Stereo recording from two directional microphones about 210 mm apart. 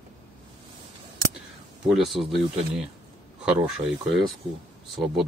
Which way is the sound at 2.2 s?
20° right (ahead or behind).